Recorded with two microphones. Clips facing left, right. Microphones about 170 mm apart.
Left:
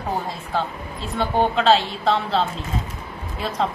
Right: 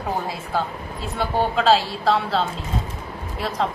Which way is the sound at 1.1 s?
5° right (ahead or behind).